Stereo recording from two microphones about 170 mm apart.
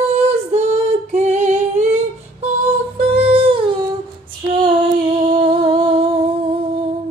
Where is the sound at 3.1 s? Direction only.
35° right (ahead or behind).